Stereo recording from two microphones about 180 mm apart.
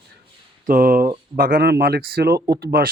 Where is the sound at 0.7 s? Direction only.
50° right (ahead or behind).